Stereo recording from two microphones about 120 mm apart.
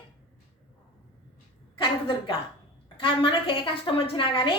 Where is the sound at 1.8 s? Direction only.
45° left (ahead or behind).